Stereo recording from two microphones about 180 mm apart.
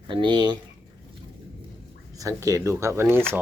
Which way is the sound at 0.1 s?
25° right (ahead or behind).